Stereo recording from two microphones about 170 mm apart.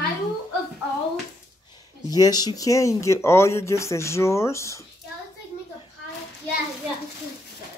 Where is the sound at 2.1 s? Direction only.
20° left (ahead or behind).